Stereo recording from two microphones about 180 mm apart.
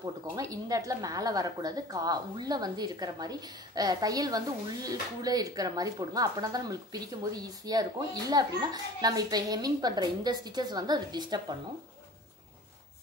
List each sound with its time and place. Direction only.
0.0 s speech: 20° right (ahead or behind)